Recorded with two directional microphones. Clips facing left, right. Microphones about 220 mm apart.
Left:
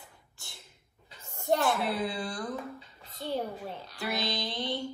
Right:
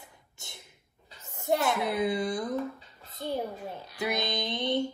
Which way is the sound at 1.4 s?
15° right (ahead or behind).